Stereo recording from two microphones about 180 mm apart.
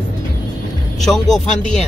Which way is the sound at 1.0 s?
Centre (ahead or behind).